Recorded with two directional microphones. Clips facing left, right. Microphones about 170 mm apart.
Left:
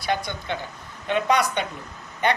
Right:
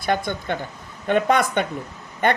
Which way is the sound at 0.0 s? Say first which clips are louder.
Right 3 dB; 50° right (ahead or behind).